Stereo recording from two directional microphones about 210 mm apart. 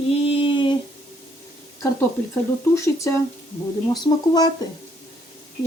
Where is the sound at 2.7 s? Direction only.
15° left (ahead or behind).